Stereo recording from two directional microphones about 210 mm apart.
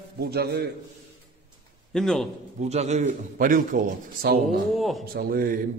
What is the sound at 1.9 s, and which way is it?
Speech, centre (ahead or behind).